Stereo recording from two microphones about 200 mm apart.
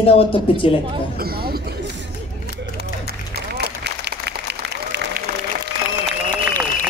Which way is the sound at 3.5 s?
55° right (ahead or behind).